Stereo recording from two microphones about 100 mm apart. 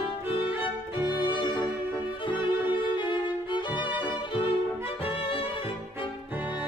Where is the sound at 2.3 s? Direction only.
50° left (ahead or behind).